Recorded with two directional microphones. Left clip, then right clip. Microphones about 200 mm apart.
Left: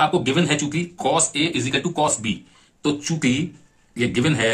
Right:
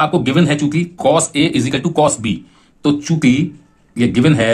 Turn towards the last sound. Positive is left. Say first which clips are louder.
# right 7 dB
turn(degrees=-35)  # may be behind; listen again after turning